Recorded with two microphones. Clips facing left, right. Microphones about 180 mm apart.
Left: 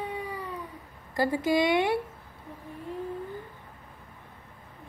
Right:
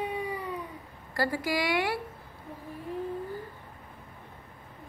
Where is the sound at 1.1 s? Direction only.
20° left (ahead or behind).